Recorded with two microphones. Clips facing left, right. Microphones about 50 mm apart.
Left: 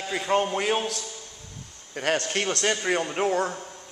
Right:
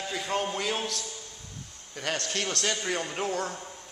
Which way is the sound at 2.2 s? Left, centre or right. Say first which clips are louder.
Left 5 dB; left.